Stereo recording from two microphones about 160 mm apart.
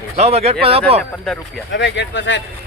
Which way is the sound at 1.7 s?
90° left.